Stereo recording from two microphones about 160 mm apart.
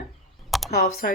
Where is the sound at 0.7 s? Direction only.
65° left (ahead or behind).